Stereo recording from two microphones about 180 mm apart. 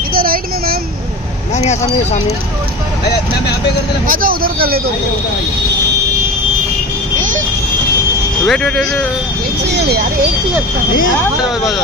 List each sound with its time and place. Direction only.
0.1 s a sound: 55° right (ahead or behind)
4.1 s speech: 55° right (ahead or behind)
8.5 s speech: 5° left (ahead or behind)
9.7 s speech: 70° right (ahead or behind)